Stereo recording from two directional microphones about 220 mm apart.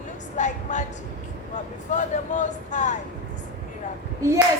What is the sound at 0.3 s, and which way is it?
Train, 35° left (ahead or behind).